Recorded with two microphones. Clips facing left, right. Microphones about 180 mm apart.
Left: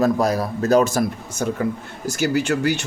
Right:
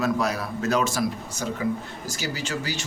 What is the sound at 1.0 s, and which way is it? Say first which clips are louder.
Speech: left 4 dB; 55° left (ahead or behind).